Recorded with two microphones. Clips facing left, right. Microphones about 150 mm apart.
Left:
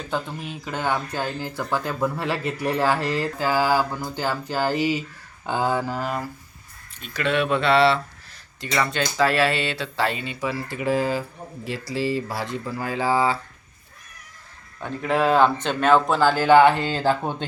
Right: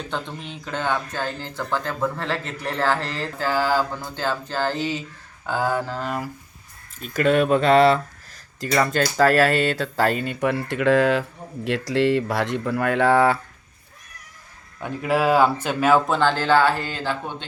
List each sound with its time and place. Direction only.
0.0 s speech: 5° left (ahead or behind)
7.0 s speech: 45° right (ahead or behind); by 13.4 s 60° right (ahead or behind)
14.8 s speech: 5° right (ahead or behind); by 17.0 s 25° left (ahead or behind)
17.0 s speech: 40° left (ahead or behind)